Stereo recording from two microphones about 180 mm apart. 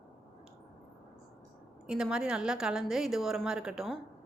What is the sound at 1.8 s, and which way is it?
A woman's voice, 5° right (ahead or behind).